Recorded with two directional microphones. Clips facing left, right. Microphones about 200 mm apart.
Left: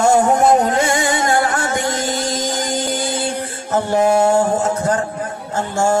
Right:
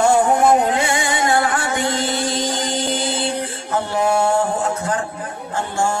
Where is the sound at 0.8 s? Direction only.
45° left (ahead or behind).